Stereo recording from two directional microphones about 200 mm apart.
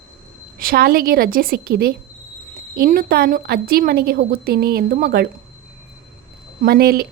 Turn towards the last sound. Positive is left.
turn(degrees=-50)  # may be behind; listen again after turning